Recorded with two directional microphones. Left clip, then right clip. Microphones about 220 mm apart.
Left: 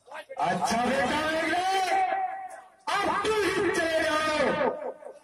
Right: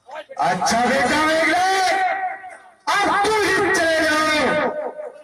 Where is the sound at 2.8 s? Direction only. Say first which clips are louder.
Right 9 dB; 40° right (ahead or behind).